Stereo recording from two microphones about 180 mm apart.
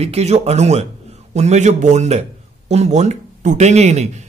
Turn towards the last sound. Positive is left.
turn(degrees=-40)  # may be behind; listen again after turning